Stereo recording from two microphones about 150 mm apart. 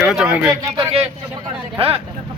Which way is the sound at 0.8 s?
40° right (ahead or behind).